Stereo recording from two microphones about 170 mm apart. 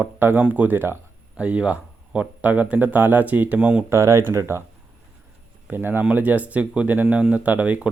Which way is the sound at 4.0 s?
20° right (ahead or behind).